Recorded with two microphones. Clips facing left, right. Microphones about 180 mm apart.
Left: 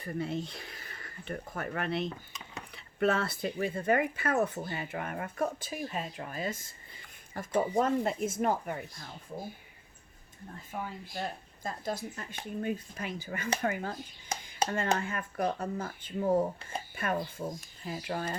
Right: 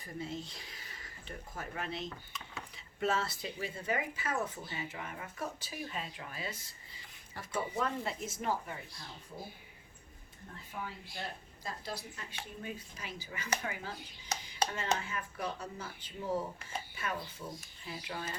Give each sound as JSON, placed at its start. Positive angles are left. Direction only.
{"t": 0.0, "sound": "speech", "side_deg": 65}
{"t": 2.0, "sound": "speech", "side_deg": 20}
{"t": 2.7, "sound": "speech", "side_deg": 60}
{"t": 10.7, "sound": "speech", "side_deg": 45}